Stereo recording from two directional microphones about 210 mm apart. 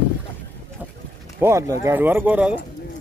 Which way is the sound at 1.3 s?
15° right (ahead or behind).